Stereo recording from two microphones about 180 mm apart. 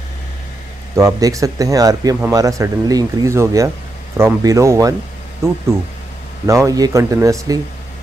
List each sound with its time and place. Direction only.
0.9 s speech: 20° right (ahead or behind)
6.4 s speech: 15° right (ahead or behind)